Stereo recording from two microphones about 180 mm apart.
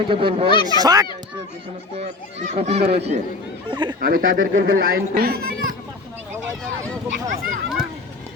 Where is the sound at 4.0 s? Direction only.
50° right (ahead or behind).